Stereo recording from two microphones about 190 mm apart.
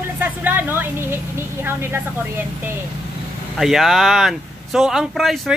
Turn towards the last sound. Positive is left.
turn(degrees=0)  # may be behind; listen again after turning